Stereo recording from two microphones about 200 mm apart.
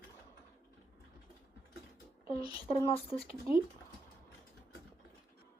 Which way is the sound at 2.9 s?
30° left (ahead or behind).